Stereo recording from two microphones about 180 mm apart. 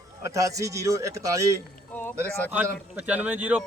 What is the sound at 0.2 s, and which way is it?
Speech, 15° right (ahead or behind).